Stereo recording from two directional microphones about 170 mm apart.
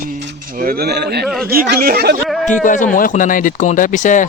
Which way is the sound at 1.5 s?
60° right (ahead or behind).